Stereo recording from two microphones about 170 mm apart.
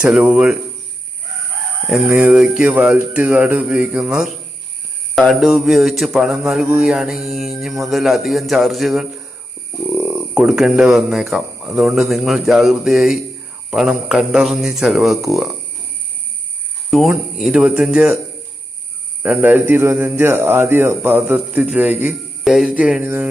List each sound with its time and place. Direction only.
0.0 s speech: 5° right (ahead or behind)
1.9 s speech: 5° right (ahead or behind)
9.9 s speech: 10° right (ahead or behind)
17.1 s speech: 5° right (ahead or behind)
19.2 s speech: 10° right (ahead or behind)